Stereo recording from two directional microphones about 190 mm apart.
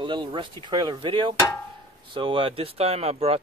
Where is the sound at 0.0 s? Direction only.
25° right (ahead or behind).